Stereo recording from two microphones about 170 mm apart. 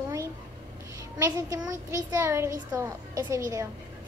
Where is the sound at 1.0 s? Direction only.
20° right (ahead or behind).